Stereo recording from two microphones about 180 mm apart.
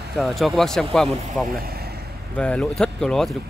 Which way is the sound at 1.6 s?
60° right (ahead or behind).